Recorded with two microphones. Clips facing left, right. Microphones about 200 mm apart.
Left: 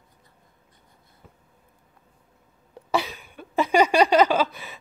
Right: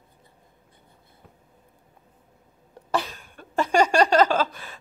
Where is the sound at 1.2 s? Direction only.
Centre (ahead or behind).